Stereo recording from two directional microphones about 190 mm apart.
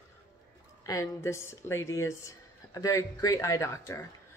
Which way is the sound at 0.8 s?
15° left (ahead or behind).